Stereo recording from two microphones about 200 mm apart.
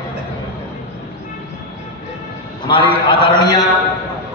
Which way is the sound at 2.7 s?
25° left (ahead or behind).